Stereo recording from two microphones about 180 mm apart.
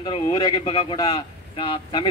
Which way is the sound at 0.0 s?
25° left (ahead or behind).